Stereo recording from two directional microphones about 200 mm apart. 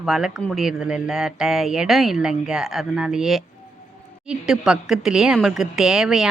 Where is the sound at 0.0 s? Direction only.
Centre (ahead or behind).